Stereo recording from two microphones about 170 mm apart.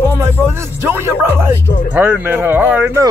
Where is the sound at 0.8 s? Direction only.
15° right (ahead or behind).